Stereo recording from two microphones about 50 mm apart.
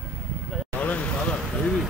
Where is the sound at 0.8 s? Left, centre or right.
Left.